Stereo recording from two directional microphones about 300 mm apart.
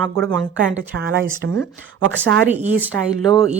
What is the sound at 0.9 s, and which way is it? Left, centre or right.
Speech, right.